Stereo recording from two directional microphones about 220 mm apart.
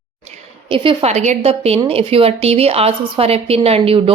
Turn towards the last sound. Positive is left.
turn(degrees=-25)  # may be behind; listen again after turning